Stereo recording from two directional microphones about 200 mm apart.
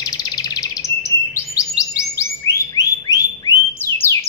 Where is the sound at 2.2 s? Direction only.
15° left (ahead or behind).